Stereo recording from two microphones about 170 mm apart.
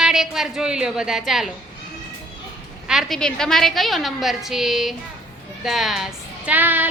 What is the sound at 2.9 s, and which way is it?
A woman's voice, centre (ahead or behind).